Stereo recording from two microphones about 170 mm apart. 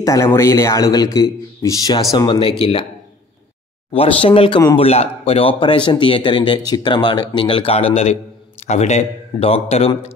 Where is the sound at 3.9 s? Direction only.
35° left (ahead or behind).